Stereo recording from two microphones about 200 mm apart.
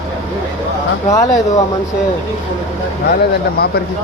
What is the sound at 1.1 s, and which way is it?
Speech, 15° left (ahead or behind).